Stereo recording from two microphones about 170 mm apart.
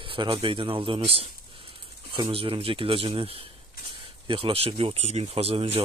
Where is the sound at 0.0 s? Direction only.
30° right (ahead or behind).